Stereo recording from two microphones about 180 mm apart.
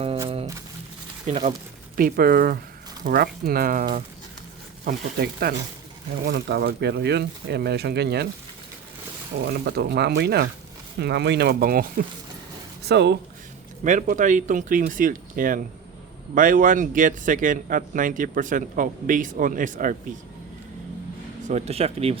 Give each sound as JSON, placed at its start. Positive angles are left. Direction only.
{"t": 1.3, "sound": "speech", "side_deg": -35}
{"t": 2.0, "sound": "speech", "side_deg": -55}
{"t": 4.9, "sound": "speech", "side_deg": -60}
{"t": 9.4, "sound": "speech", "side_deg": -65}
{"t": 12.8, "sound": "speech", "side_deg": -70}
{"t": 13.8, "sound": "speech", "side_deg": -45}
{"t": 21.4, "sound": "speech", "side_deg": -35}